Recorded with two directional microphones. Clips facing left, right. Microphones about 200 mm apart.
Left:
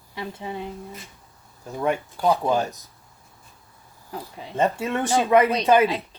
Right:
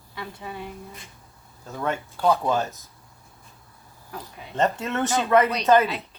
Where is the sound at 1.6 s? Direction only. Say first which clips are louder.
Left 4 dB; 15° left (ahead or behind).